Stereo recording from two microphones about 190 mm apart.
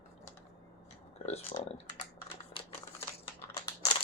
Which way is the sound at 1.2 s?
35° left (ahead or behind).